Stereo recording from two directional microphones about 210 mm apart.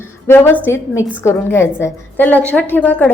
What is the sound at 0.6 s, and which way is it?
A woman's voice, 10° left (ahead or behind).